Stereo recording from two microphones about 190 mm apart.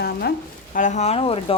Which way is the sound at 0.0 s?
55° left (ahead or behind).